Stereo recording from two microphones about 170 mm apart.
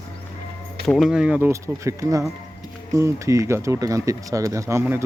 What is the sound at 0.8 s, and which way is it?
Speech, centre (ahead or behind).